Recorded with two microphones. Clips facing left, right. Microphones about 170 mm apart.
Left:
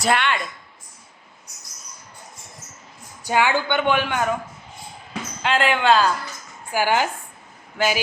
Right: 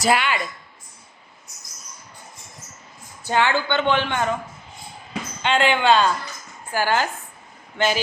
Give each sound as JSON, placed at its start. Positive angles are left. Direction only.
{"t": 0.0, "sound": "speech", "side_deg": -5}
{"t": 3.2, "sound": "a woman's voice", "side_deg": 10}
{"t": 5.4, "sound": "speech", "side_deg": 0}
{"t": 6.7, "sound": "a woman's voice", "side_deg": 15}